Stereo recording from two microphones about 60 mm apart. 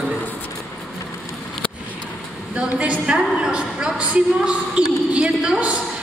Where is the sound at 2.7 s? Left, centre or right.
Right.